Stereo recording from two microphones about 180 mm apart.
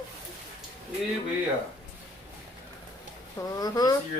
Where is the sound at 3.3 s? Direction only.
20° left (ahead or behind).